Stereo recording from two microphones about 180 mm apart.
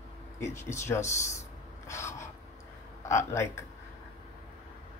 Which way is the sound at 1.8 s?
15° left (ahead or behind).